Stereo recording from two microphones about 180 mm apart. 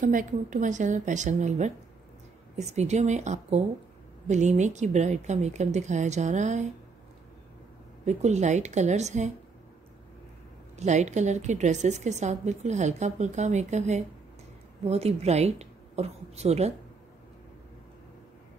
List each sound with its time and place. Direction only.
0.0 s a woman's voice: 45° right (ahead or behind)
8.0 s a woman's voice: 40° right (ahead or behind)
10.8 s a woman's voice: 40° right (ahead or behind)